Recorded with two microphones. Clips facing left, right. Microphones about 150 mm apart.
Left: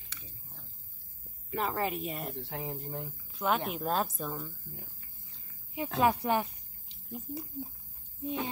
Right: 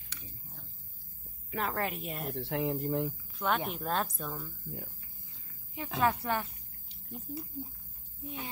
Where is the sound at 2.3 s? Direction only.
75° right (ahead or behind).